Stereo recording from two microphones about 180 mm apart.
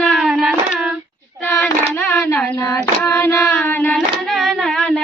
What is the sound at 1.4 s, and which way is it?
Child singing, 10° left (ahead or behind).